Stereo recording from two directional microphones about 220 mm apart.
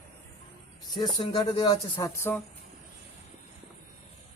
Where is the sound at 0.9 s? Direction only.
20° left (ahead or behind).